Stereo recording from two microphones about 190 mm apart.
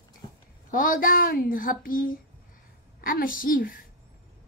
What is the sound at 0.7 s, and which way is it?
A woman's voice, 45° left (ahead or behind).